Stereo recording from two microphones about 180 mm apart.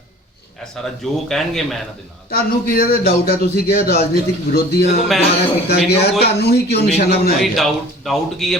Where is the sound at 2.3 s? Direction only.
55° left (ahead or behind).